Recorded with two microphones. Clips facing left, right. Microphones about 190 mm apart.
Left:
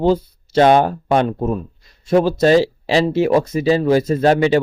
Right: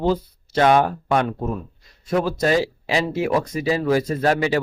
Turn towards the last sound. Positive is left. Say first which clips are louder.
# left 6 dB
turn(degrees=25)  # may be behind; listen again after turning